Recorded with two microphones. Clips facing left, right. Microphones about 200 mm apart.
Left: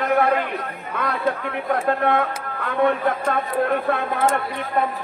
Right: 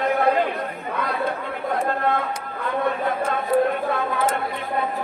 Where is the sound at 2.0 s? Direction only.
60° left (ahead or behind).